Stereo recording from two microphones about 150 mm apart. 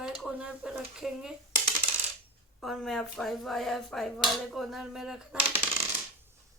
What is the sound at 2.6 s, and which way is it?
Speech, centre (ahead or behind).